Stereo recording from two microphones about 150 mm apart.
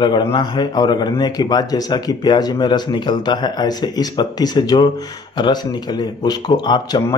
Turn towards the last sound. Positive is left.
turn(degrees=30)  # may be behind; listen again after turning